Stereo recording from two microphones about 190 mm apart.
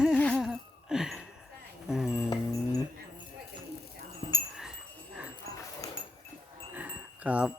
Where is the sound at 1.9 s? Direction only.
Centre (ahead or behind).